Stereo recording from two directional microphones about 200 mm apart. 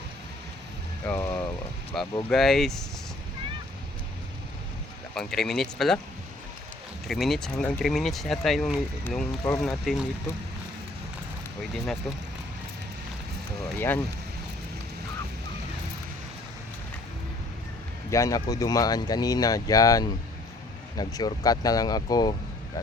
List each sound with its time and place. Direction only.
1.0 s speech: 10° left (ahead or behind)
5.1 s speech: 5° left (ahead or behind)
7.1 s speech: centre (ahead or behind)
13.7 s speech: 10° left (ahead or behind)
18.1 s speech: 15° left (ahead or behind)